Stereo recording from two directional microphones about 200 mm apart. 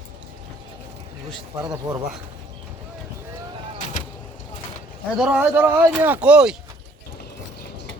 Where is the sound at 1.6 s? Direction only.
20° right (ahead or behind).